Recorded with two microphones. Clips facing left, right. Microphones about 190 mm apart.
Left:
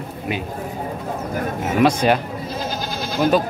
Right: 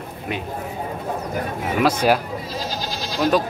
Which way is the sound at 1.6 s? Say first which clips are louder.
Left 2 dB; 5° right (ahead or behind).